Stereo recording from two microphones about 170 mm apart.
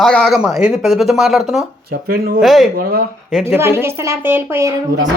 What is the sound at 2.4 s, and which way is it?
Speech, centre (ahead or behind).